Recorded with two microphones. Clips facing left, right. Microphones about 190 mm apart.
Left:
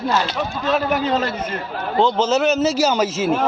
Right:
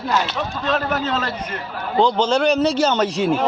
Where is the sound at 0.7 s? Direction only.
10° left (ahead or behind).